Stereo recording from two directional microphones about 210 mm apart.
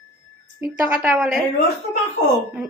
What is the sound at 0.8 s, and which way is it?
Speech, 5° right (ahead or behind).